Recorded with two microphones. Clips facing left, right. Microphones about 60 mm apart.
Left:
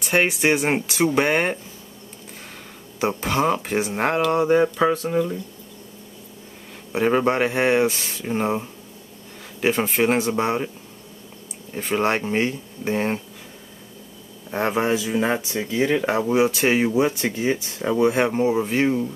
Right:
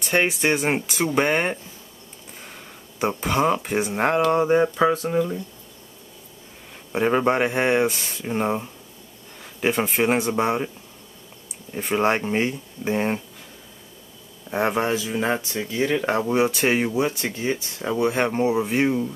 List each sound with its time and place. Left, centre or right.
0.0 s speech: centre
3.0 s speech: centre
6.9 s speech: centre
11.7 s speech: centre
14.5 s speech: centre
16.9 s speech: centre
18.3 s speech: centre